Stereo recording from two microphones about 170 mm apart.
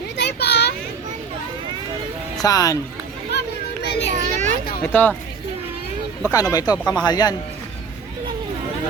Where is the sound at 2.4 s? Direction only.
20° left (ahead or behind).